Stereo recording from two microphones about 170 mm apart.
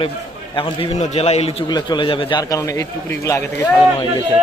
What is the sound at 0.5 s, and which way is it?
A man's voice, 30° left (ahead or behind).